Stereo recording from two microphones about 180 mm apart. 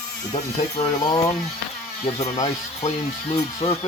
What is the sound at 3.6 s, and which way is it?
Speech, 35° left (ahead or behind).